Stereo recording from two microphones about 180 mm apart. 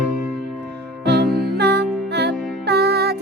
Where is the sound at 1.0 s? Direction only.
65° right (ahead or behind).